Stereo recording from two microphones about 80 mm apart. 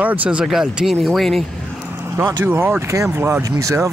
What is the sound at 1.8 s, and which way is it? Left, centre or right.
Vehicle, right.